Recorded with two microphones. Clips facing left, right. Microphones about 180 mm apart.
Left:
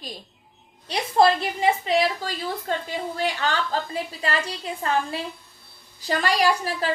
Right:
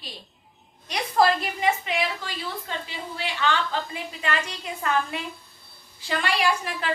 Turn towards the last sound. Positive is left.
turn(degrees=40)  # may be behind; listen again after turning